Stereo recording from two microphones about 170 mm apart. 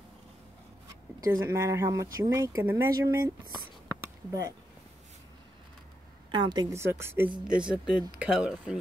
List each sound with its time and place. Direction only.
1.2 s speech: 20° right (ahead or behind)
6.3 s speech: 25° right (ahead or behind); by 8.7 s 5° right (ahead or behind)